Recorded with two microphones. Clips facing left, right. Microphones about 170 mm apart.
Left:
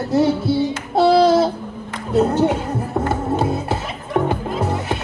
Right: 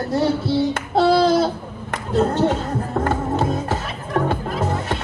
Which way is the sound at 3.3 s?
15° left (ahead or behind).